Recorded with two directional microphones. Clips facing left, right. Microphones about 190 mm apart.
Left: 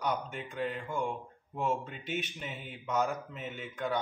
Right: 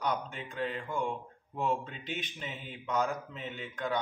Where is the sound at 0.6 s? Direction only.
Centre (ahead or behind).